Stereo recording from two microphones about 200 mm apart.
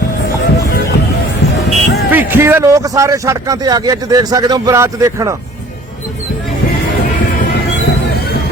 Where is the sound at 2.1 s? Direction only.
10° right (ahead or behind).